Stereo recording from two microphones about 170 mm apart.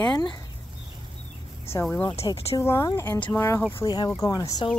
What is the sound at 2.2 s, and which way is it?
Speech, 35° left (ahead or behind).